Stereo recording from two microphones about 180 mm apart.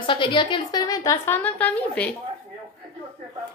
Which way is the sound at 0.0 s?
25° left (ahead or behind).